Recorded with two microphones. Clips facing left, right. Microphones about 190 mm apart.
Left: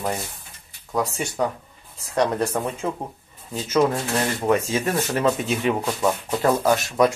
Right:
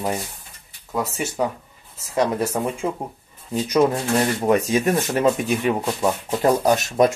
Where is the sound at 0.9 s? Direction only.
5° right (ahead or behind).